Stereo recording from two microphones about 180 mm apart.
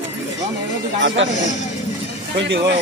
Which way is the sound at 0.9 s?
90° right.